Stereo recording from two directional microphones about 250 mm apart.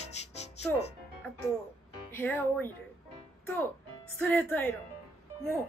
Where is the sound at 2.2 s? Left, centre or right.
Centre.